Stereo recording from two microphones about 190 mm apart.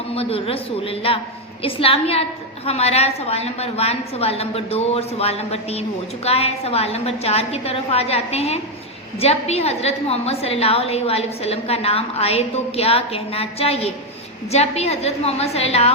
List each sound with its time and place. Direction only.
0.1 s a man's voice: 30° left (ahead or behind)